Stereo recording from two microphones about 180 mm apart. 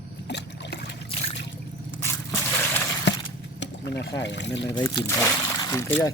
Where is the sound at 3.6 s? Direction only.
70° left (ahead or behind).